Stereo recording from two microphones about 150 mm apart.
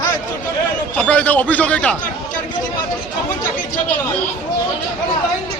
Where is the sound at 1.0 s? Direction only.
10° left (ahead or behind).